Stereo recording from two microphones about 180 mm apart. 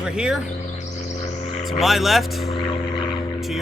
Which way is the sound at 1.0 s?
40° left (ahead or behind).